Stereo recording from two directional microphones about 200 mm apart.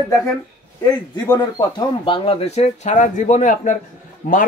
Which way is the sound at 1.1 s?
20° left (ahead or behind).